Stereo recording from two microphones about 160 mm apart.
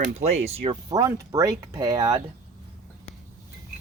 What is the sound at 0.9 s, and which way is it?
A man's voice, 20° right (ahead or behind).